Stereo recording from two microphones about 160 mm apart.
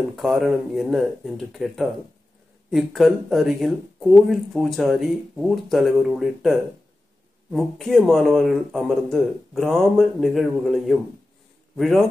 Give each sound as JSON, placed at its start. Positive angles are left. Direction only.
{"t": 0.1, "sound": "a man's voice", "side_deg": 0}